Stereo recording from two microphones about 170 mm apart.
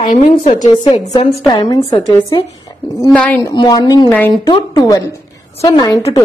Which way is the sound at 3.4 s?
20° left (ahead or behind).